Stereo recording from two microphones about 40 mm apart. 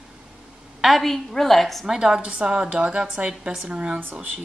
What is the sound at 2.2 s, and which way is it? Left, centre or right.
A woman's voice, right.